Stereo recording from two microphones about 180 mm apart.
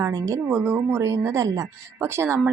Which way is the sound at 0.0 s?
20° right (ahead or behind).